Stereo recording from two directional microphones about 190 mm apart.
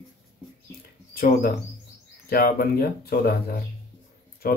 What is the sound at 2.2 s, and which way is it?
Speech, 50° left (ahead or behind).